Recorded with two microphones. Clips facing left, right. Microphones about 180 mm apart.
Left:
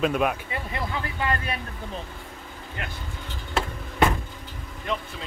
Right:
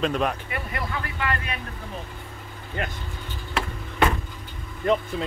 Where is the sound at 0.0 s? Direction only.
5° left (ahead or behind).